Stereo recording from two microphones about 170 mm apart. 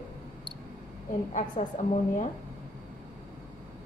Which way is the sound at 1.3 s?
45° left (ahead or behind).